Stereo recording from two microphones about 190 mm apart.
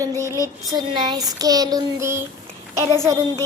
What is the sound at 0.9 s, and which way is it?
A child's voice, 20° right (ahead or behind).